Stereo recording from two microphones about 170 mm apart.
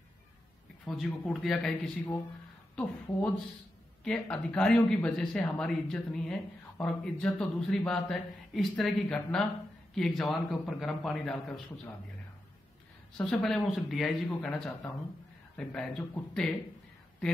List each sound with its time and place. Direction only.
0.8 s speech: centre (ahead or behind)
13.2 s speech: 5° left (ahead or behind)